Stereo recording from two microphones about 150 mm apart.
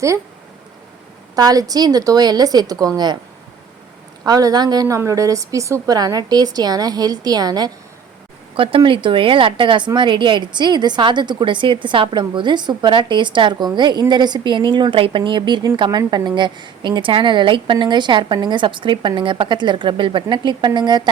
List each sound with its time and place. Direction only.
1.4 s a woman's voice: 25° right (ahead or behind)
4.3 s a woman's voice: 25° right (ahead or behind)
8.5 s a woman's voice: 35° right (ahead or behind)